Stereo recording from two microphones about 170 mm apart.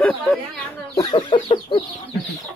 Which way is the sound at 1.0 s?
30° left (ahead or behind).